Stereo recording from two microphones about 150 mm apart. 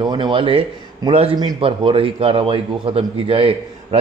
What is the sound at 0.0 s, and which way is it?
A man's voice, 30° right (ahead or behind).